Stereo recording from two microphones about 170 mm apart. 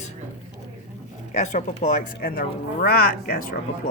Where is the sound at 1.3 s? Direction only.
45° left (ahead or behind); by 3.5 s 60° left (ahead or behind).